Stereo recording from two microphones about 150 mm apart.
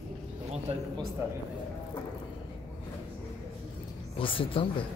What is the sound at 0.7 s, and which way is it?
Speech, 40° right (ahead or behind).